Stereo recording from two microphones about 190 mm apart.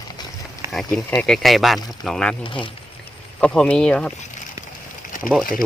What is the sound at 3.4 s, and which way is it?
Speech, 5° left (ahead or behind).